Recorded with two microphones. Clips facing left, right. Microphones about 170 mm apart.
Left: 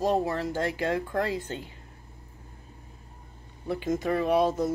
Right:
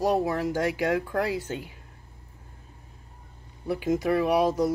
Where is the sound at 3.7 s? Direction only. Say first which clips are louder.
Right 3 dB; 10° right (ahead or behind).